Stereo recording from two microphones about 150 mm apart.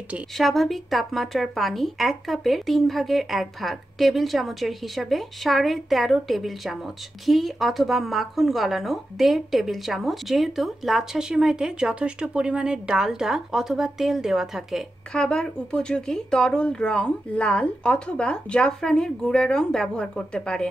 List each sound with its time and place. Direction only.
0.1 s speech: centre (ahead or behind)